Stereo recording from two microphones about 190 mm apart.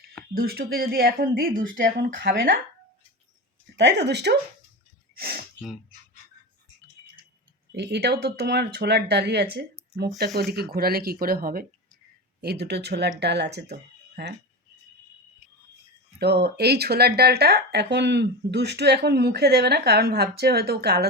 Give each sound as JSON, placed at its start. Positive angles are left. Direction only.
{"t": 0.3, "sound": "speech", "side_deg": -50}
{"t": 3.8, "sound": "speech", "side_deg": -65}
{"t": 7.7, "sound": "speech", "side_deg": -60}
{"t": 16.1, "sound": "speech", "side_deg": -60}